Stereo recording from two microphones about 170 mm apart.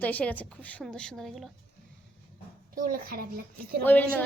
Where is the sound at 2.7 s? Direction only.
55° right (ahead or behind).